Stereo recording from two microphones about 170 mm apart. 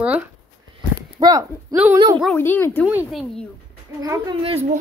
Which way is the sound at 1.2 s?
20° right (ahead or behind).